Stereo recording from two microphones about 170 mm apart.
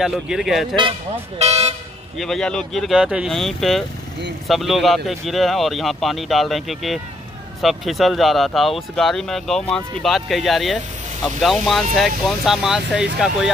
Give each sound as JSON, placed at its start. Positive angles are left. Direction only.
{"t": 0.0, "sound": "speech", "side_deg": 0}
{"t": 0.7, "sound": "speech", "side_deg": -30}
{"t": 2.1, "sound": "speech", "side_deg": 0}